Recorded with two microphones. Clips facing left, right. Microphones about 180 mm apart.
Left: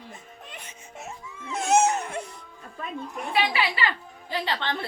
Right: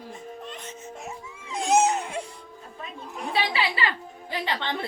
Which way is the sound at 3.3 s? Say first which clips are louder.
Left 1 dB; 25° right (ahead or behind).